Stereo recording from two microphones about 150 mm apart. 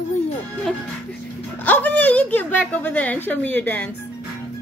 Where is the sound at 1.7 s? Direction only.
10° left (ahead or behind).